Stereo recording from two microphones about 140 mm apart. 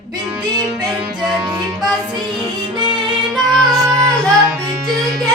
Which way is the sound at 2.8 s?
30° right (ahead or behind).